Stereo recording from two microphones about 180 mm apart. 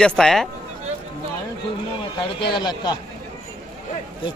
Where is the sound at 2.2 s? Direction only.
25° left (ahead or behind).